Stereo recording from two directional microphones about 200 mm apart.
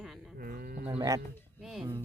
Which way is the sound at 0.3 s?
50° right (ahead or behind).